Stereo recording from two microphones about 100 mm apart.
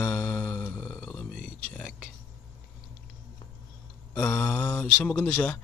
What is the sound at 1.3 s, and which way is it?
Speech, 15° left (ahead or behind).